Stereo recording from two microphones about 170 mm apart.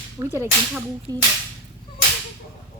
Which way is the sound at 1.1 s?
20° right (ahead or behind).